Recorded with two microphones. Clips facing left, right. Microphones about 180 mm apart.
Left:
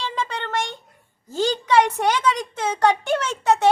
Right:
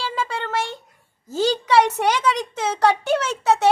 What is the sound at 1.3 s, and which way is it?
A woman's voice, 10° right (ahead or behind).